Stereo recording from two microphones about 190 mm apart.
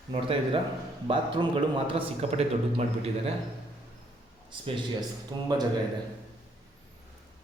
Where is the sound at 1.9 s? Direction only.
30° right (ahead or behind).